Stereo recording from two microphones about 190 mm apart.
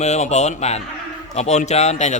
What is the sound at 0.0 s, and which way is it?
A man's voice, 35° left (ahead or behind).